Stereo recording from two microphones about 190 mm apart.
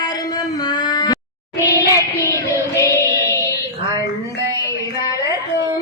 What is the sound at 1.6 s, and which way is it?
Child singing, 15° left (ahead or behind).